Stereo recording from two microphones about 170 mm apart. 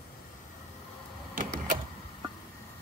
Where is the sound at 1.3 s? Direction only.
55° right (ahead or behind).